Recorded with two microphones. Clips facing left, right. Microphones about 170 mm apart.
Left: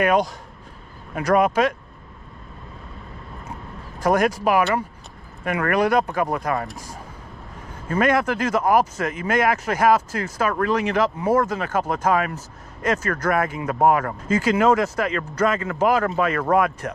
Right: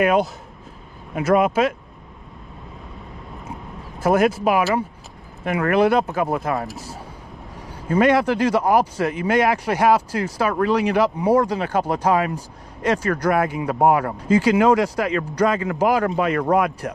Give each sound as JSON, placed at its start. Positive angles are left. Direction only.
{"t": 0.0, "sound": "speech", "side_deg": -5}
{"t": 4.0, "sound": "speech", "side_deg": -5}
{"t": 5.9, "sound": "speech", "side_deg": -5}
{"t": 8.0, "sound": "speech", "side_deg": -30}
{"t": 8.3, "sound": "speech", "side_deg": -10}